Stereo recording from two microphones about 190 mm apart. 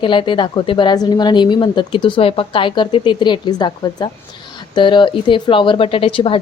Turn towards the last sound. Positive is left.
turn(degrees=30)  # may be behind; listen again after turning